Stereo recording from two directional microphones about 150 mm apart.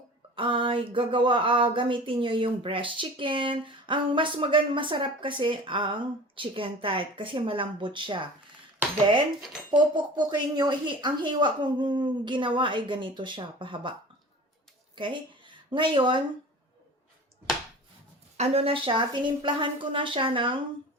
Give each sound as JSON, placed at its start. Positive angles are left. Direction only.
{"t": 0.3, "sound": "speech", "side_deg": -35}
{"t": 9.6, "sound": "speech", "side_deg": -30}
{"t": 14.9, "sound": "a woman's voice", "side_deg": -35}
{"t": 18.3, "sound": "speech", "side_deg": -40}